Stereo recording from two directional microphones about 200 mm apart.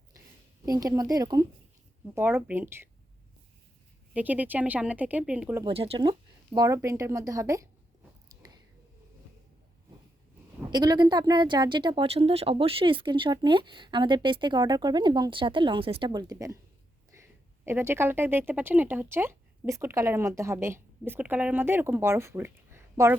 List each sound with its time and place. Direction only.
0.6 s speech: 15° right (ahead or behind)
4.1 s speech: 10° right (ahead or behind)
5.6 s speech: 30° right (ahead or behind)
10.6 s a woman's voice: 20° right (ahead or behind)
17.7 s speech: 10° right (ahead or behind)